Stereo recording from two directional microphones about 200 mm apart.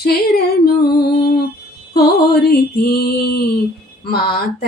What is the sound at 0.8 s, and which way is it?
Music, 55° left (ahead or behind).